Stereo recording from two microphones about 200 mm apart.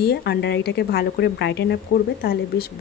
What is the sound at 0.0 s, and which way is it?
Speech, 55° left (ahead or behind).